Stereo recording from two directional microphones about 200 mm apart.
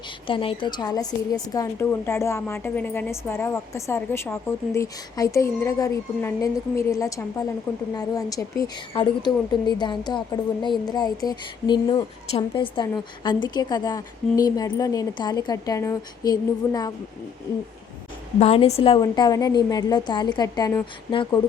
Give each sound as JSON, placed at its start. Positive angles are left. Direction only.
{"t": 0.3, "sound": "a woman's voice", "side_deg": 25}
{"t": 18.3, "sound": "a woman's voice", "side_deg": 30}